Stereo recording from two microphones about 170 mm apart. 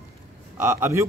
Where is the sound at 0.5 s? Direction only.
15° right (ahead or behind).